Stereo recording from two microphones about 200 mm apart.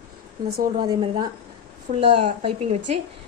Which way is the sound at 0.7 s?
20° right (ahead or behind).